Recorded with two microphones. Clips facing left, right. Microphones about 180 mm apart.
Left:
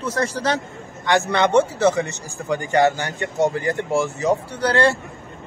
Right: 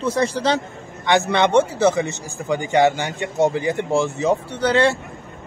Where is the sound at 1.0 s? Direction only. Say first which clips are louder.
Right 1 dB; 20° right (ahead or behind).